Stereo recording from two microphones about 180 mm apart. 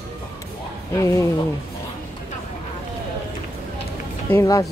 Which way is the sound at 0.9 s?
15° left (ahead or behind).